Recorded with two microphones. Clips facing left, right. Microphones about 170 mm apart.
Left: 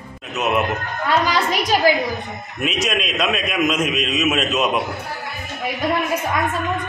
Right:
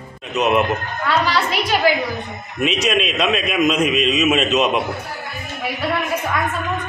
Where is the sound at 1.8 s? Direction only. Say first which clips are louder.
Left 1 dB; 40° left (ahead or behind).